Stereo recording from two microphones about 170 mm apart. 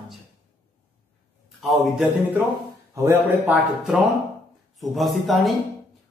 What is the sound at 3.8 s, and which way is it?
A man's voice, 5° right (ahead or behind).